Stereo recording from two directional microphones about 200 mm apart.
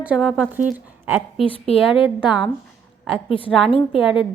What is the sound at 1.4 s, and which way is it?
Speech, 25° left (ahead or behind).